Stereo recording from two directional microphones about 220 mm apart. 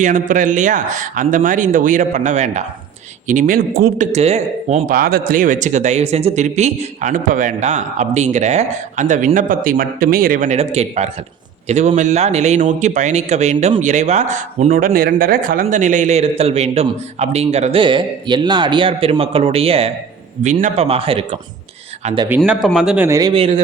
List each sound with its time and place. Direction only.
0.0 s speech: 35° right (ahead or behind)
22.4 s speech: centre (ahead or behind); by 23.6 s 25° right (ahead or behind)